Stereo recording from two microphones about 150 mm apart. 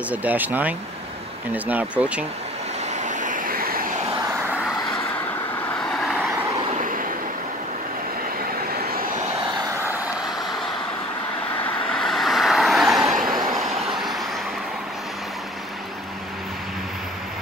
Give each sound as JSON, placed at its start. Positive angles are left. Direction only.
{"t": 0.1, "sound": "speech", "side_deg": -10}
{"t": 2.9, "sound": "vehicle", "side_deg": -55}
{"t": 5.9, "sound": "vehicle", "side_deg": 0}
{"t": 11.9, "sound": "vehicle", "side_deg": 5}